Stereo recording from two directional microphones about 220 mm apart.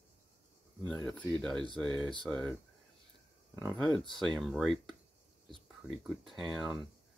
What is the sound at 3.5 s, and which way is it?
Speech, centre (ahead or behind).